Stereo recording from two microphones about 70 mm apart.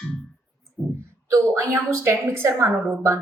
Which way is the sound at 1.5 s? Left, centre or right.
Right.